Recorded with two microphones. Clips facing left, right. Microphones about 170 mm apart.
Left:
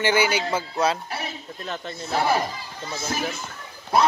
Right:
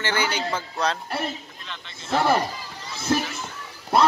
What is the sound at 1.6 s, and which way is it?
Speech, 45° left (ahead or behind).